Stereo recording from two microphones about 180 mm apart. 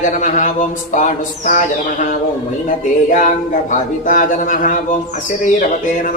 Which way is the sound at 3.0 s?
45° left (ahead or behind).